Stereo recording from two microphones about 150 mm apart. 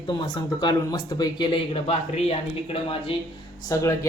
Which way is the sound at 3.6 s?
20° left (ahead or behind).